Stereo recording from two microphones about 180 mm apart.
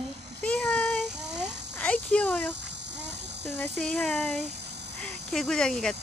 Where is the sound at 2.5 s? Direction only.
75° right (ahead or behind).